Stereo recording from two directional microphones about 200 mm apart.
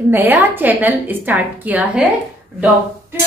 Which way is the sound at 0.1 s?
10° right (ahead or behind).